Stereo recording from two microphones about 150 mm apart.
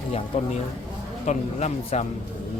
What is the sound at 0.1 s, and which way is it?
Speech, 45° left (ahead or behind).